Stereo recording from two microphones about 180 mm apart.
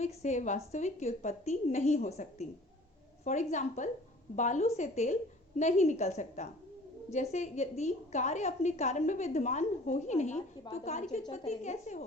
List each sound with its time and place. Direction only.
0.0 s a woman's voice: 40° left (ahead or behind)